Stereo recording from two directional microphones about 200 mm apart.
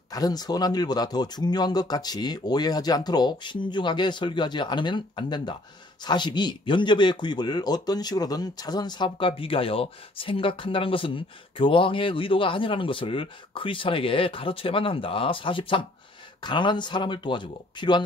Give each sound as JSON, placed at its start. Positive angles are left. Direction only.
{"t": 0.1, "sound": "speech", "side_deg": 20}